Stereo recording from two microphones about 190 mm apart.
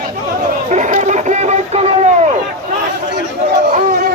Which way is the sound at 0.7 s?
40° right (ahead or behind).